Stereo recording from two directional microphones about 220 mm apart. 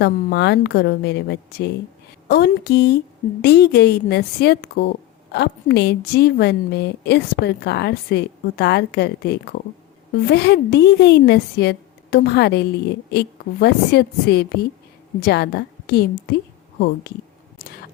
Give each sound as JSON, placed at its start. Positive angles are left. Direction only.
{"t": 0.0, "sound": "a woman's voice", "side_deg": 50}
{"t": 17.6, "sound": "tick-tock", "side_deg": 40}